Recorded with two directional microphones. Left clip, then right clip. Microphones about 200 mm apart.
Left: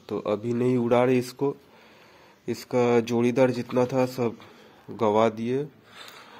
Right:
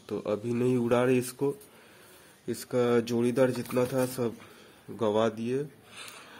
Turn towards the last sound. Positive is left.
turn(degrees=-20)  # may be behind; listen again after turning